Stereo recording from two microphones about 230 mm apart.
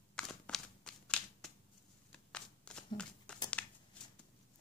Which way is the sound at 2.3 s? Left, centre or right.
Centre.